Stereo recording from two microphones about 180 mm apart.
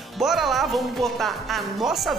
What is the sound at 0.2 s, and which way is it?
Speech, centre (ahead or behind).